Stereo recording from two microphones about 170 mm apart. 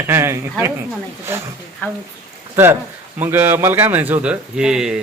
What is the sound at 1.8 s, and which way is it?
Speech, 10° left (ahead or behind).